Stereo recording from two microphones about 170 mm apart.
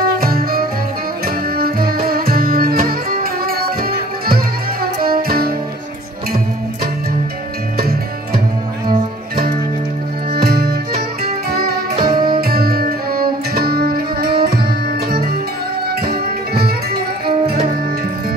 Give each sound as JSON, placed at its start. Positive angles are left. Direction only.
{"t": 0.2, "sound": "music", "side_deg": -60}
{"t": 7.7, "sound": "music", "side_deg": -60}
{"t": 10.3, "sound": "music", "side_deg": -65}
{"t": 12.0, "sound": "music", "side_deg": -25}
{"t": 12.3, "sound": "music", "side_deg": -60}